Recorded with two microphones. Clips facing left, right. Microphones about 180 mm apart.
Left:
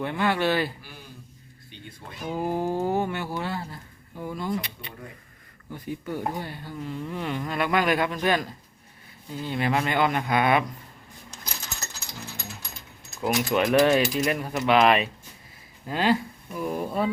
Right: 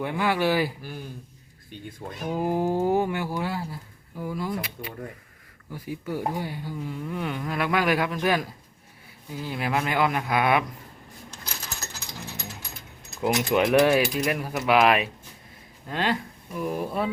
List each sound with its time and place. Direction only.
0.0 s speech: 10° right (ahead or behind)
1.7 s speech: 45° right (ahead or behind)
2.2 s speech: 10° right (ahead or behind)
13.2 s speech: 20° right (ahead or behind)